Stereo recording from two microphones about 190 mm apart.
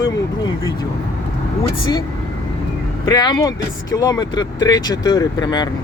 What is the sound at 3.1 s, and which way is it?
Speech, 20° left (ahead or behind).